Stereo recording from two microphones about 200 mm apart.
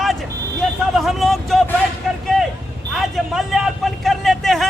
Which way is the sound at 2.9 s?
Centre (ahead or behind).